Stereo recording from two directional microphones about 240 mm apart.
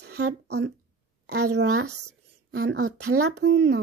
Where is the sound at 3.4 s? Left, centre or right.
Right.